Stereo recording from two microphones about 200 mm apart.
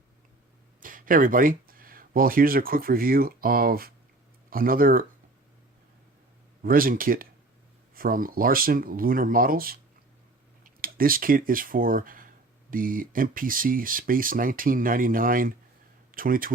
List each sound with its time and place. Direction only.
0.8 s speech: 45° right (ahead or behind)
6.6 s speech: 45° right (ahead or behind)